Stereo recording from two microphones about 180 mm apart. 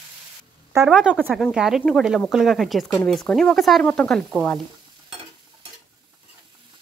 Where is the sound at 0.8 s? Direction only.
5° right (ahead or behind).